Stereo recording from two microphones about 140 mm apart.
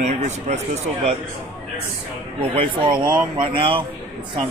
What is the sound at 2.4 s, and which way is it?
Speech, 40° right (ahead or behind).